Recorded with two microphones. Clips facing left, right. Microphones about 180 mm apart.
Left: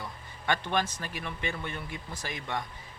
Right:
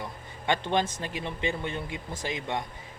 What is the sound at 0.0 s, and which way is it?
Speech, 20° right (ahead or behind).